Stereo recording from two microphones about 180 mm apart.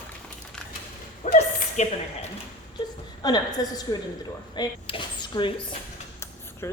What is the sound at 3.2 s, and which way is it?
Speech, 20° left (ahead or behind).